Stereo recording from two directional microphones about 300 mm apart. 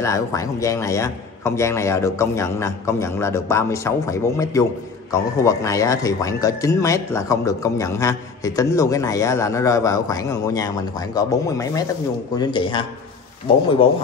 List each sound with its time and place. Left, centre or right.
0.0 s speech: centre